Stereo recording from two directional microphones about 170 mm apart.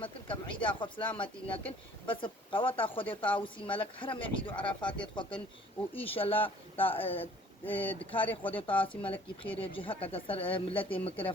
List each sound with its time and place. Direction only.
0.0 s speech: 30° left (ahead or behind)
7.6 s speech: 10° left (ahead or behind)
7.9 s speech: 30° left (ahead or behind)